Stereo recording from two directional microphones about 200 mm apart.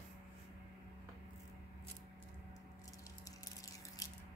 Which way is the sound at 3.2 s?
15° left (ahead or behind).